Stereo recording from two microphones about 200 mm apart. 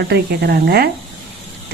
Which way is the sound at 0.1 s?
55° right (ahead or behind).